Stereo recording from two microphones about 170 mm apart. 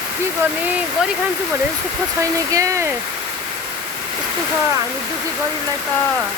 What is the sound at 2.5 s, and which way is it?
Speech, 20° right (ahead or behind).